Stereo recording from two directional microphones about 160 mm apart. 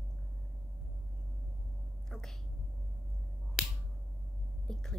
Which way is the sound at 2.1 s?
Centre (ahead or behind).